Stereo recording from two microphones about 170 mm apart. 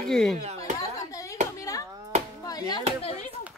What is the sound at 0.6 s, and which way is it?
Chopping, 20° left (ahead or behind).